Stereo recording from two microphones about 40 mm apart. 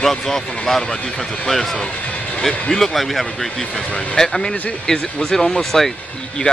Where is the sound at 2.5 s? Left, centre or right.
Centre.